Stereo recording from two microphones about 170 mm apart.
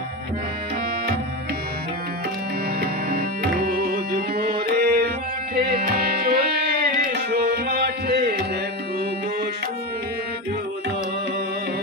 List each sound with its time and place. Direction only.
3.1 s tabla: 65° right (ahead or behind)
5.7 s music: 65° right (ahead or behind)